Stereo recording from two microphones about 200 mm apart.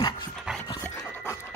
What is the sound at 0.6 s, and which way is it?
Pant, 20° left (ahead or behind).